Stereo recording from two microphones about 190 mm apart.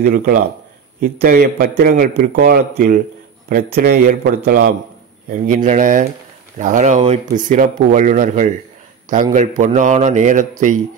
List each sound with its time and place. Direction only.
0.0 s speech: 50° right (ahead or behind)
5.3 s a man's voice: 45° right (ahead or behind)